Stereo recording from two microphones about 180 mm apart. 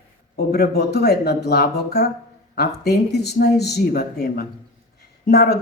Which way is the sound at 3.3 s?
65° left (ahead or behind).